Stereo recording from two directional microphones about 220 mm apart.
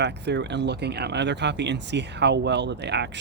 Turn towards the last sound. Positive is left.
turn(degrees=-50)  # may be behind; listen again after turning